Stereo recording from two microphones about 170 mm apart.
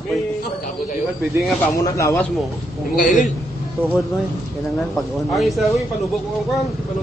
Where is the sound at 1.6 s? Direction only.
20° left (ahead or behind).